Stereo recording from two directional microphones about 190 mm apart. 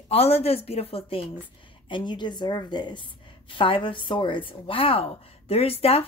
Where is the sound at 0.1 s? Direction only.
30° left (ahead or behind).